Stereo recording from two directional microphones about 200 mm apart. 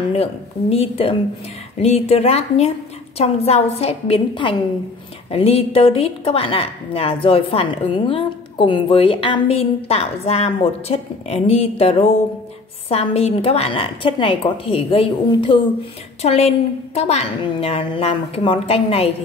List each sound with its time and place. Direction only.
0.1 s a woman's voice: 30° left (ahead or behind)